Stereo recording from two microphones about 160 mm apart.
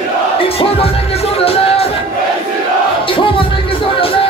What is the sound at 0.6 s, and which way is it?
Music, 40° left (ahead or behind).